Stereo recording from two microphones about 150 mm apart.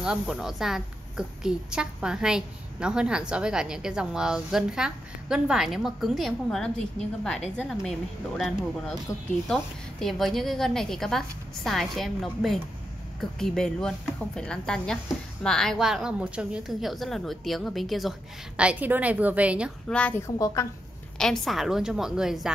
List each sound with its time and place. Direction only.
0.0 s a woman's voice: 5° right (ahead or behind)
19.9 s a woman's voice: 10° left (ahead or behind)
20.3 s a woman's voice: 20° left (ahead or behind)
21.2 s a woman's voice: centre (ahead or behind)